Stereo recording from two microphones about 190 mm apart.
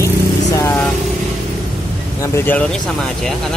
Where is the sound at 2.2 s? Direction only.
15° left (ahead or behind).